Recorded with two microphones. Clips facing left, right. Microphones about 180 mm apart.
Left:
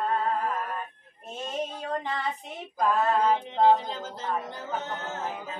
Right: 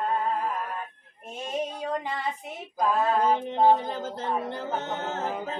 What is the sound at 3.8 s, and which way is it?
Music, 55° right (ahead or behind).